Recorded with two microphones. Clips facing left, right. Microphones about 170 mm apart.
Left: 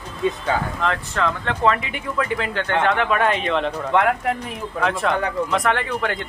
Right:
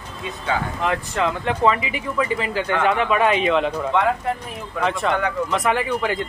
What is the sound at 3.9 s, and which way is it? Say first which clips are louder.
Speech: left 3 dB; 70° left (ahead or behind).